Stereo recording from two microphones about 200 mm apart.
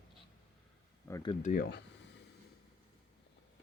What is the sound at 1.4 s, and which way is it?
Speech, 40° left (ahead or behind).